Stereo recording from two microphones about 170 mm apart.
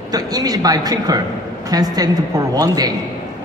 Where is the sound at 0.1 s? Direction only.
20° right (ahead or behind).